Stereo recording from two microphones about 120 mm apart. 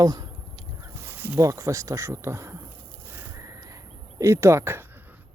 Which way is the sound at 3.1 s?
15° right (ahead or behind).